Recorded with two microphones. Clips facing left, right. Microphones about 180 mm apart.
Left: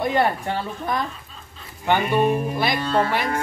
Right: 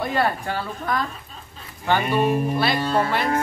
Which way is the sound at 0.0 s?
20° left (ahead or behind).